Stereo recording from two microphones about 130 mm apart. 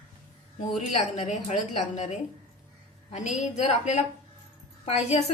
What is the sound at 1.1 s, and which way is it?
A woman's voice, 60° left (ahead or behind).